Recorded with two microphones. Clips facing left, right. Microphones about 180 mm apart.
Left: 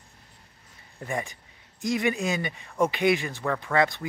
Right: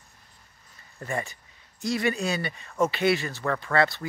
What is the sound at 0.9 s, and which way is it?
Speech, 15° left (ahead or behind).